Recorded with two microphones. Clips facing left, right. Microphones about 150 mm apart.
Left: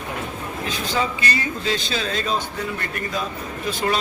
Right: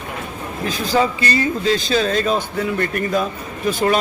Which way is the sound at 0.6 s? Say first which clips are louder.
Right 7 dB; 40° right (ahead or behind).